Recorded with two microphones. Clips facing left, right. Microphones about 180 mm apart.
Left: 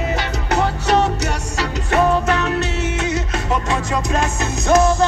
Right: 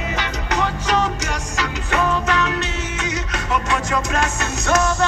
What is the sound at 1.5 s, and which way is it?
Music, 35° left (ahead or behind).